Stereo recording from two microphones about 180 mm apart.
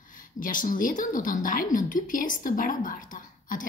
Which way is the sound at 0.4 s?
50° left (ahead or behind).